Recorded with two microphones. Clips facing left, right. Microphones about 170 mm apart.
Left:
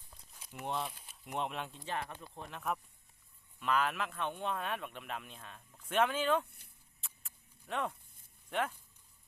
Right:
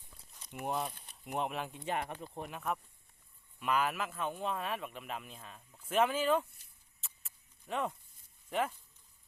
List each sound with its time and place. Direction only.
0.6 s speech: 5° right (ahead or behind)
1.9 s speech: 20° right (ahead or behind)
2.6 s speech: centre (ahead or behind)
7.7 s speech: 5° right (ahead or behind)